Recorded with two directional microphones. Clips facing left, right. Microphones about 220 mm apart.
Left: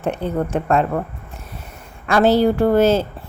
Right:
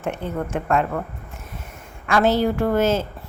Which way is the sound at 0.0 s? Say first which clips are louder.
Left 5 dB; 35° left (ahead or behind).